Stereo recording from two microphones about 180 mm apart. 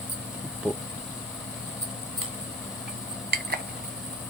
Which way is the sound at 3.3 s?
60° right (ahead or behind).